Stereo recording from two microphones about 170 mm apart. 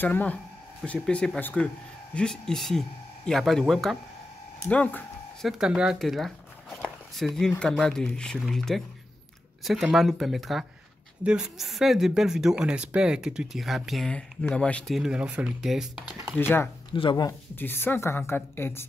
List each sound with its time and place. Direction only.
0.0 s a woman's voice: 10° left (ahead or behind)
5.5 s speech: centre (ahead or behind)
16.3 s a woman's voice: 10° left (ahead or behind)
16.9 s speech: 30° left (ahead or behind)
17.6 s a woman's voice: 10° left (ahead or behind)